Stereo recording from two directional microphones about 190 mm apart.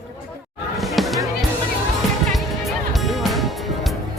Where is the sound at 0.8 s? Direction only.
Centre (ahead or behind).